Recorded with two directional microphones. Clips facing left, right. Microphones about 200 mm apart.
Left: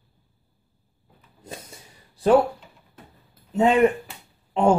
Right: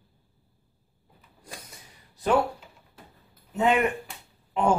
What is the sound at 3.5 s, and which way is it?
Speech, 30° left (ahead or behind).